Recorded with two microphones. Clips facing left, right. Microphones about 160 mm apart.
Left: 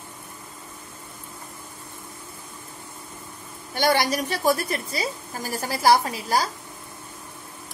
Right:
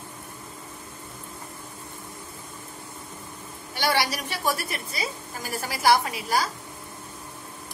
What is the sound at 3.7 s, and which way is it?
A woman's voice, 45° left (ahead or behind).